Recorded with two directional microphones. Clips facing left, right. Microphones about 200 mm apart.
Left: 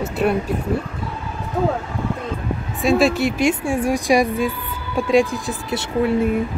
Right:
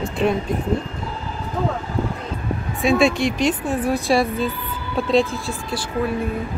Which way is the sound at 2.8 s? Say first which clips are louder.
Left 1 dB; centre (ahead or behind).